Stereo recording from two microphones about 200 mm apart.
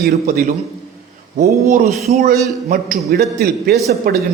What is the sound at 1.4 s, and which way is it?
A man's voice, 40° right (ahead or behind).